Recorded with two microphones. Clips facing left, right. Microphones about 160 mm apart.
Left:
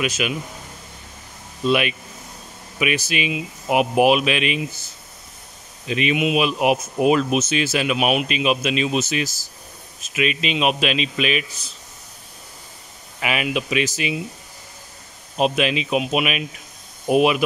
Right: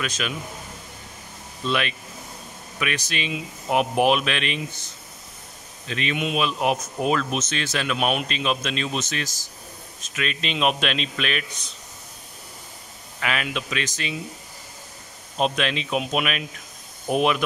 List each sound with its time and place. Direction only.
0.0 s speech: 10° left (ahead or behind)
1.6 s a man's voice: 10° left (ahead or behind)
13.2 s speech: 10° left (ahead or behind)
15.3 s speech: 5° left (ahead or behind)